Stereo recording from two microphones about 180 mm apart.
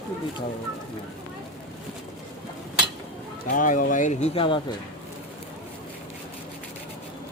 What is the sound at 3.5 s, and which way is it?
Speech, 45° left (ahead or behind).